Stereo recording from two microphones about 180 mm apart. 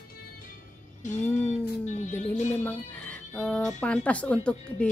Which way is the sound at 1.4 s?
40° left (ahead or behind).